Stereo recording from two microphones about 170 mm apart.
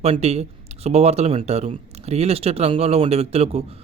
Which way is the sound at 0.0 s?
40° right (ahead or behind).